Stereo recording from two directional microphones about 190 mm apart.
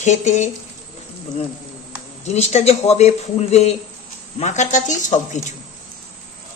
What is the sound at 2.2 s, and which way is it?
Speech, 35° left (ahead or behind).